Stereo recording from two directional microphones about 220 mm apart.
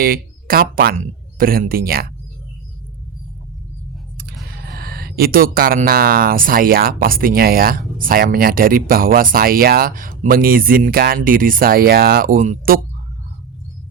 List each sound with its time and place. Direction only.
0.0 s speech: 40° right (ahead or behind)
4.4 s speech: 45° right (ahead or behind)